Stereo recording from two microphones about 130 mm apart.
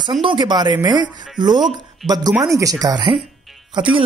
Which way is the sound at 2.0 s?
30° right (ahead or behind).